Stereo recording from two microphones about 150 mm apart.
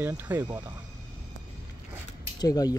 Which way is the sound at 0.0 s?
15° right (ahead or behind).